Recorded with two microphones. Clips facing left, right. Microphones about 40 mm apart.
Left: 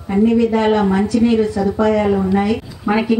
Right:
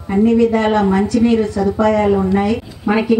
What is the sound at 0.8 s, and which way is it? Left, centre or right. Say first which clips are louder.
A woman's voice: right 1 dB; centre.